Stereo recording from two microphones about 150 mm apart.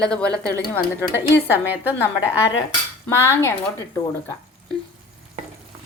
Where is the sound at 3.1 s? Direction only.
15° left (ahead or behind).